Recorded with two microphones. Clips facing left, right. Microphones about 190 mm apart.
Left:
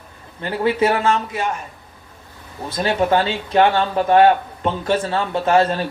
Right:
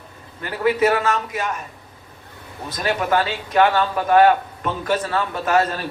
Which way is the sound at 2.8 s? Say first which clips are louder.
Left 3 dB; 30° left (ahead or behind).